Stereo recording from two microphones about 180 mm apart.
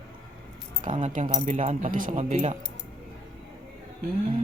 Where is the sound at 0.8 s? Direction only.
45° right (ahead or behind).